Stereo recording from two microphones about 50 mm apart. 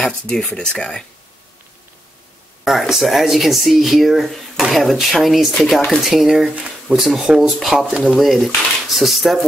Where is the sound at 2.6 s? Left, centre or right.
Centre.